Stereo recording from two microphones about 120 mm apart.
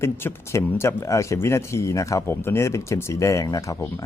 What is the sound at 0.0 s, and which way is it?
Speech, 20° left (ahead or behind).